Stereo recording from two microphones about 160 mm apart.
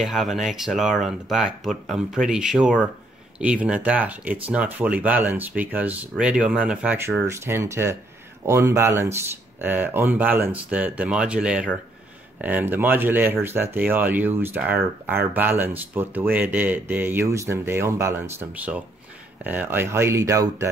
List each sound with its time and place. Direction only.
0.0 s speech: centre (ahead or behind); by 20.6 s 20° right (ahead or behind)